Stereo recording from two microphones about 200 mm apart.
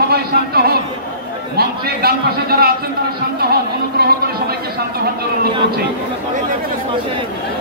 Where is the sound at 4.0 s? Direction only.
50° right (ahead or behind).